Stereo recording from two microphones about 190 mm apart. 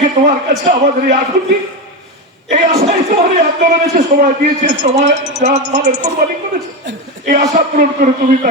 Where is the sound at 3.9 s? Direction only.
45° right (ahead or behind).